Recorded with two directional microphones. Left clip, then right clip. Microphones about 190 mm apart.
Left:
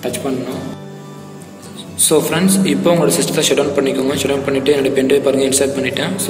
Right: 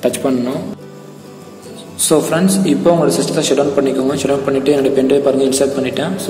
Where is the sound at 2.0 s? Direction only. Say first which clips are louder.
Right 1 dB; 35° right (ahead or behind).